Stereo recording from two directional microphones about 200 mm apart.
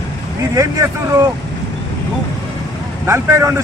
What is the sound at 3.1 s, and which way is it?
Speech, 15° right (ahead or behind).